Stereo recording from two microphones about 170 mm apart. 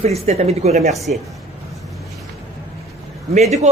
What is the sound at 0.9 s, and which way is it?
Speech, centre (ahead or behind).